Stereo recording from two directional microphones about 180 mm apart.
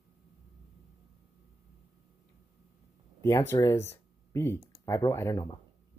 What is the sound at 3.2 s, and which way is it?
Speech, 15° left (ahead or behind).